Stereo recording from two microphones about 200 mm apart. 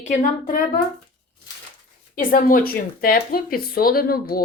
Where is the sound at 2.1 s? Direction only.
45° left (ahead or behind).